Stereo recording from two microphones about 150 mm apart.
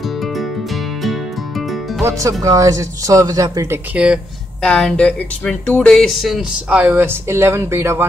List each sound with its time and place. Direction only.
0.2 s music: centre (ahead or behind)
2.0 s speech: 20° right (ahead or behind)
3.9 s speech: 5° right (ahead or behind)
4.6 s speech: 5° left (ahead or behind); by 8.0 s 15° right (ahead or behind)